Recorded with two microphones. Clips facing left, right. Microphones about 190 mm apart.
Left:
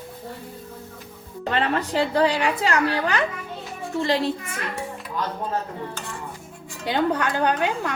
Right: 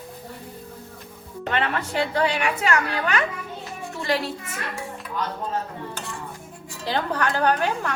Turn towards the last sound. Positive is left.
turn(degrees=15)  # may be behind; listen again after turning